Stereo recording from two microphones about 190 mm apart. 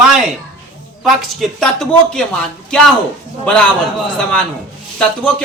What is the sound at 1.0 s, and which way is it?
A man's voice, centre (ahead or behind).